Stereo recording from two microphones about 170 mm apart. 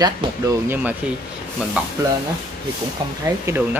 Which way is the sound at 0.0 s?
15° right (ahead or behind).